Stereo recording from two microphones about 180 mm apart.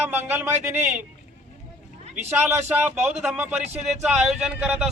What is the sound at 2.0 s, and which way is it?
Speech, 40° right (ahead or behind).